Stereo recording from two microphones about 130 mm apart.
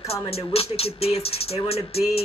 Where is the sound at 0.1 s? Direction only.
50° left (ahead or behind).